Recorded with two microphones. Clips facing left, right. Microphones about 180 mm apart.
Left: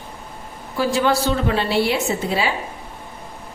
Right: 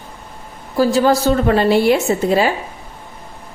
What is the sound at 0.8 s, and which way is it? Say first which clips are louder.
A woman's voice: right 5 dB; 40° right (ahead or behind).